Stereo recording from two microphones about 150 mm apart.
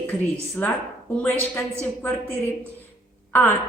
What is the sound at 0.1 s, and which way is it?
Speech, 10° left (ahead or behind).